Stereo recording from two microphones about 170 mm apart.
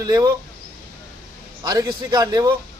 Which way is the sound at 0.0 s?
20° right (ahead or behind).